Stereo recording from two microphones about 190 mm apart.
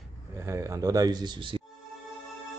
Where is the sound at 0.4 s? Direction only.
15° right (ahead or behind).